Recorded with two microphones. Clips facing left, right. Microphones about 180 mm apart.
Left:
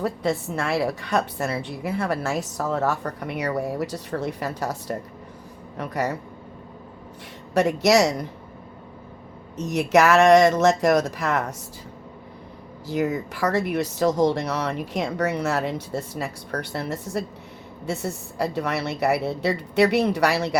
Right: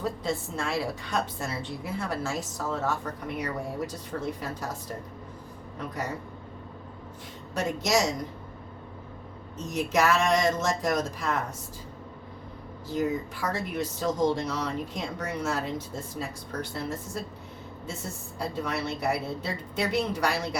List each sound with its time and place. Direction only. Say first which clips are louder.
0.0 s a woman's voice: left 6 dB; 65° left (ahead or behind)
7.5 s speech: left 8 dB; 70° left (ahead or behind)
9.6 s speech: left 7 dB; 75° left (ahead or behind)
12.9 s speech: left 4 dB; 75° left (ahead or behind)